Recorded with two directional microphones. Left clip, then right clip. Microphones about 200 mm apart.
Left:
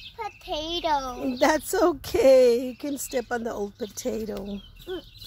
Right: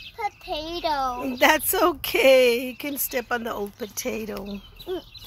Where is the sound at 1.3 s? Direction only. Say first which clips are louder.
Right 2 dB; 15° left (ahead or behind).